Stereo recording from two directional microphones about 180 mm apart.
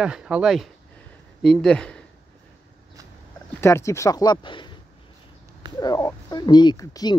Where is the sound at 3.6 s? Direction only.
15° left (ahead or behind).